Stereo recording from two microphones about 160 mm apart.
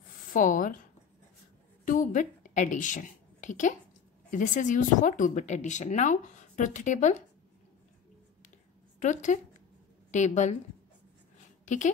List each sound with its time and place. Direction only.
0.3 s speech: 55° left (ahead or behind)
1.9 s a woman's voice: 55° left (ahead or behind)
9.0 s speech: 50° left (ahead or behind)
11.6 s a woman's voice: 50° left (ahead or behind)